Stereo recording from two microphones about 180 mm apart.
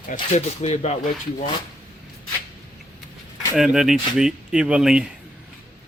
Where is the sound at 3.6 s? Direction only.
5° right (ahead or behind).